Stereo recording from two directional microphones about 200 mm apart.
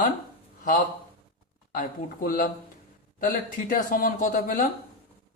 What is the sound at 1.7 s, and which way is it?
Speech, 45° left (ahead or behind).